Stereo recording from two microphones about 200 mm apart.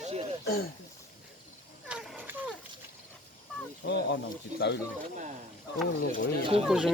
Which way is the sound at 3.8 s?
55° left (ahead or behind).